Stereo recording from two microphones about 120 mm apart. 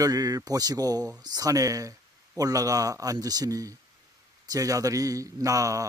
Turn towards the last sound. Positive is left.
turn(degrees=-25)  # may be behind; listen again after turning